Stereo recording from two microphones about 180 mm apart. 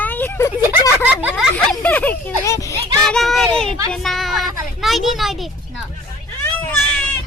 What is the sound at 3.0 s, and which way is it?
Speech, centre (ahead or behind).